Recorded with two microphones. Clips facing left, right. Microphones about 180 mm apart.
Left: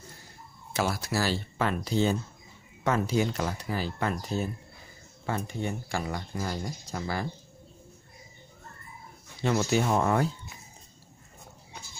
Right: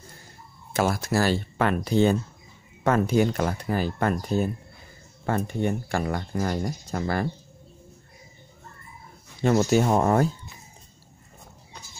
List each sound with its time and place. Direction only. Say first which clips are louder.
0.7 s speech: right 5 dB; 50° right (ahead or behind)
9.4 s speech: right 5 dB; 45° right (ahead or behind)